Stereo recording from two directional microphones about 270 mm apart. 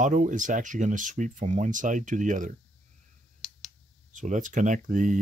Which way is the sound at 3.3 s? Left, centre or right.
Centre.